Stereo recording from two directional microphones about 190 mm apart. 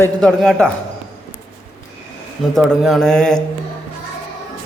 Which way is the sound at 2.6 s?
Centre (ahead or behind).